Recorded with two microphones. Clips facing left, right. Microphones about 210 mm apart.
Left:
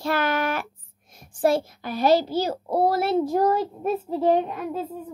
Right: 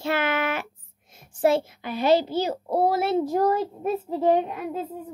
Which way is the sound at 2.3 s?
20° right (ahead or behind).